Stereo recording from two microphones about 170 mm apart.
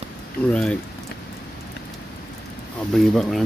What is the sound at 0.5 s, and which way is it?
Speech, 5° left (ahead or behind).